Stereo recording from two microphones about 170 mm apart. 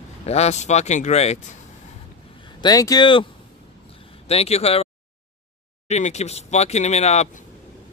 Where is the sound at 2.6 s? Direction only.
20° left (ahead or behind).